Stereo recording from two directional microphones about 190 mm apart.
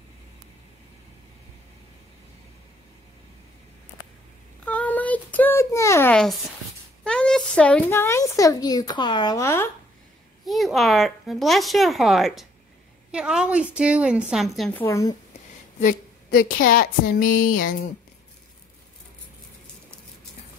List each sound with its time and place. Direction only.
4.6 s a sound: 5° left (ahead or behind)
7.1 s speech: 5° left (ahead or behind)
10.4 s speech: centre (ahead or behind)
14.9 s speech: 15° left (ahead or behind)
15.8 s a woman's voice: 45° left (ahead or behind)
17.3 s a sound: 90° left